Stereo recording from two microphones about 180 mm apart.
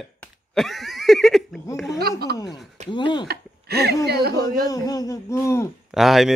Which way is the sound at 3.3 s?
60° right (ahead or behind).